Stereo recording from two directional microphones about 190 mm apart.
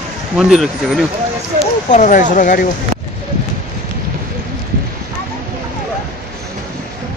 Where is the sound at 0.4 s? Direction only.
5° right (ahead or behind).